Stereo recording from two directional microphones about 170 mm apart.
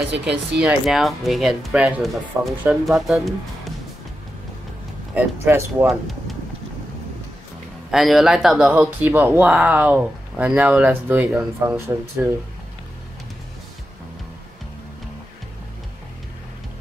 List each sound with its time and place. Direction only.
0.3 s speech: 5° right (ahead or behind)
5.1 s speech: 15° right (ahead or behind)
5.9 s speech: centre (ahead or behind)
7.9 s speech: centre (ahead or behind)